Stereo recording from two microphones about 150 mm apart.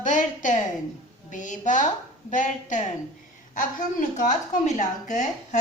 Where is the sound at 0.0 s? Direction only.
55° left (ahead or behind).